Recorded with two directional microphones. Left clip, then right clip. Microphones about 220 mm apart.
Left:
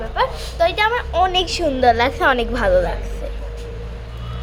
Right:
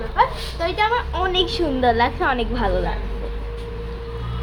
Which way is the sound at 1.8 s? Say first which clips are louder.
Left 4 dB; 35° left (ahead or behind).